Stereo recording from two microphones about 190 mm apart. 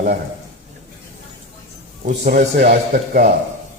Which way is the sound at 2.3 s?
55° right (ahead or behind).